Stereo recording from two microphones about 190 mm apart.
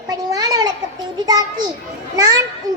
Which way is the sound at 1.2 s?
20° right (ahead or behind).